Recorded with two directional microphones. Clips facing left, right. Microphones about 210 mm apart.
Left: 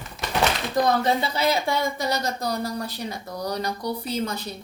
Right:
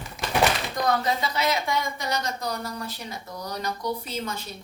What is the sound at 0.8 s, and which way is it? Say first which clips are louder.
Speech: left 3 dB; 30° left (ahead or behind).